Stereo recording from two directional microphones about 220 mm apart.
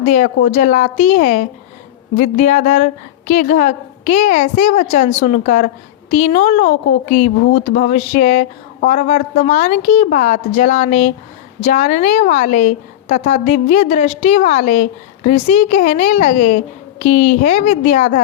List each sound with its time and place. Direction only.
0.0 s a woman's voice: 35° left (ahead or behind)